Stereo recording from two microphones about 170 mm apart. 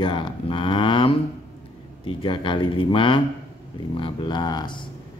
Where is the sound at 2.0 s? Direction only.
30° left (ahead or behind).